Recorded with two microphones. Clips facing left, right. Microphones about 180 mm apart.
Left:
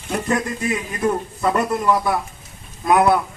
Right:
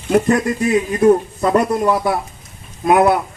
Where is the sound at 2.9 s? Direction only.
25° right (ahead or behind).